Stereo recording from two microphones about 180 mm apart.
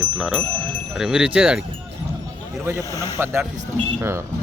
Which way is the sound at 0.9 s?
5° right (ahead or behind).